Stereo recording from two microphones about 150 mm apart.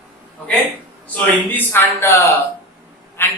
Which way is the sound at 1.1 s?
15° left (ahead or behind).